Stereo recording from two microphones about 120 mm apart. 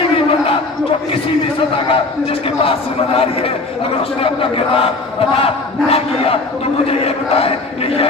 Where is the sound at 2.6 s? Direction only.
55° left (ahead or behind).